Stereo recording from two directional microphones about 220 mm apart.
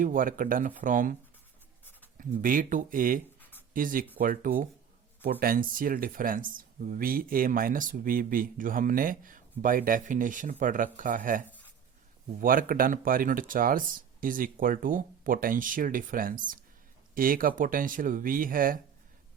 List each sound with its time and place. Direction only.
0.0 s speech: 40° right (ahead or behind)
1.8 s writing: 10° left (ahead or behind)
2.1 s speech: 40° right (ahead or behind)
11.4 s writing: 5° left (ahead or behind)
12.4 s speech: 40° right (ahead or behind)